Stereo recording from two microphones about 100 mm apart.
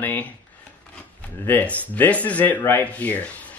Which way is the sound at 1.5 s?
15° left (ahead or behind).